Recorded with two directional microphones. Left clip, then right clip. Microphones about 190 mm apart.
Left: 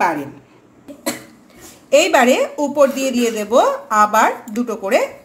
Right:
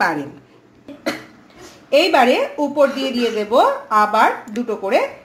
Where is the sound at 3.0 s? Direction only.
45° left (ahead or behind).